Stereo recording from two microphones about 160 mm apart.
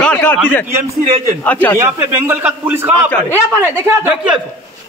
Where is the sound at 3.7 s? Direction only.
15° right (ahead or behind).